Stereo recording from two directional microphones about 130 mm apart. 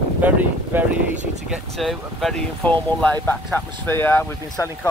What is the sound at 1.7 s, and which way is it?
Speech, centre (ahead or behind).